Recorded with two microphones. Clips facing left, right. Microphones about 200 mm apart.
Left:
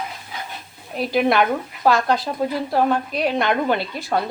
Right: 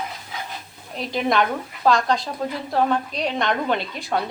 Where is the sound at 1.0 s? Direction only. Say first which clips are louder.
Left 3 dB; 5° left (ahead or behind).